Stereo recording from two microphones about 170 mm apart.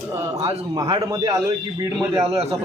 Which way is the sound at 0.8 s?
30° right (ahead or behind).